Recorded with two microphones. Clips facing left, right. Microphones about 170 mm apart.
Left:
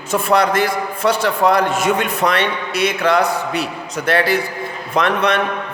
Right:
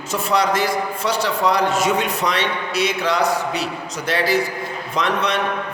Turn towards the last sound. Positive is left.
turn(degrees=55)  # may be behind; listen again after turning